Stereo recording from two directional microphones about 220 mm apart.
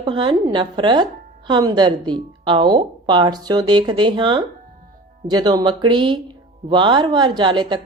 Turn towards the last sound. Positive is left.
turn(degrees=-20)  # may be behind; listen again after turning